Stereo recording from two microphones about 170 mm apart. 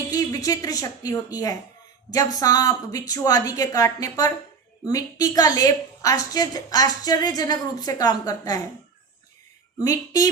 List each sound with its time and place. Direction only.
0.1 s a woman's voice: 20° left (ahead or behind)
9.8 s a woman's voice: 20° left (ahead or behind)